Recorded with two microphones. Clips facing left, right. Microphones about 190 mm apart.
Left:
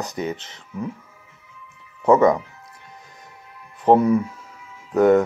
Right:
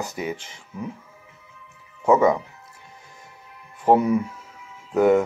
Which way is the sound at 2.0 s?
5° right (ahead or behind).